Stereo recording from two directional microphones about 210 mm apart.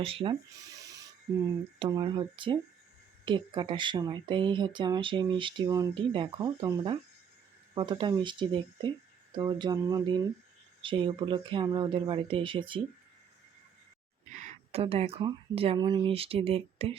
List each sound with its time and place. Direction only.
0.0 s speech: 25° right (ahead or behind)
14.3 s speech: 30° right (ahead or behind)